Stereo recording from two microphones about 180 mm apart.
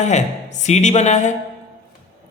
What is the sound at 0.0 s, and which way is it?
A man's voice, 40° left (ahead or behind).